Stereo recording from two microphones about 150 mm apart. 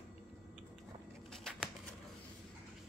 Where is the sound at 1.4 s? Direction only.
5° left (ahead or behind).